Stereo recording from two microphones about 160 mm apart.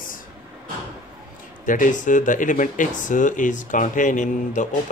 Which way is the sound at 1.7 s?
55° left (ahead or behind).